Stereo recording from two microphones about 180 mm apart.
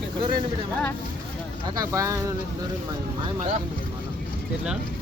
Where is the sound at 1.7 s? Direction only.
20° right (ahead or behind).